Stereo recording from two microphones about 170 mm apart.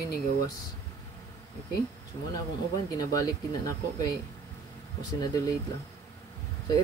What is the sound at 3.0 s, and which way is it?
Speech, 20° left (ahead or behind).